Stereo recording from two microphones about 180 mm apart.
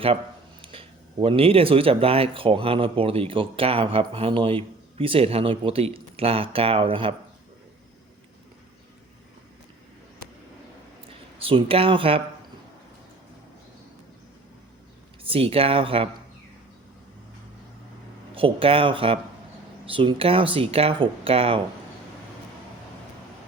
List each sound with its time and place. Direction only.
0.6 s speech: 30° right (ahead or behind)
11.3 s speech: 30° right (ahead or behind)
15.2 s speech: 30° right (ahead or behind)
18.3 s speech: 30° right (ahead or behind)